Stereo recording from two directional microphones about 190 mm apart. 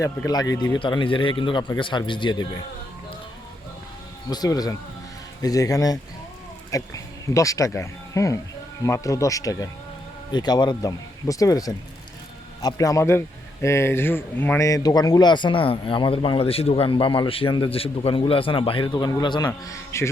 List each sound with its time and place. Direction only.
0.0 s speech: 20° left (ahead or behind)
4.3 s speech: 20° left (ahead or behind)